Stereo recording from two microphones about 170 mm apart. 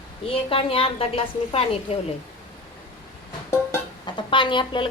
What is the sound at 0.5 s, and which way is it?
Speech, 35° left (ahead or behind).